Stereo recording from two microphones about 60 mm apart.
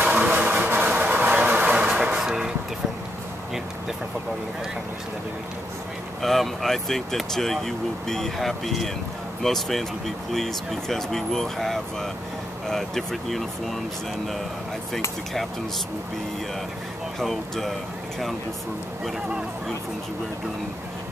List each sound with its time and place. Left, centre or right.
0.0 s a sound: right
1.8 s music: centre
6.2 s speech: centre
17.2 s speech: centre